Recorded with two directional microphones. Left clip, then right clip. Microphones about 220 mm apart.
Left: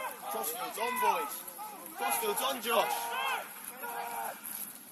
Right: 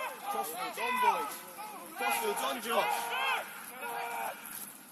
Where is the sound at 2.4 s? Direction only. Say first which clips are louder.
Left 2 dB; 30° left (ahead or behind).